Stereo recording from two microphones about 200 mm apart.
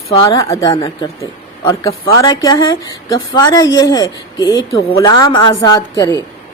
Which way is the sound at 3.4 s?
20° left (ahead or behind).